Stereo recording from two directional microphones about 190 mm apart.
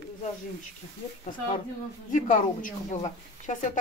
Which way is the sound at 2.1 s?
45° left (ahead or behind).